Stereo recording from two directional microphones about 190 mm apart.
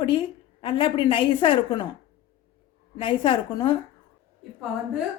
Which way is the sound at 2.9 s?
25° left (ahead or behind).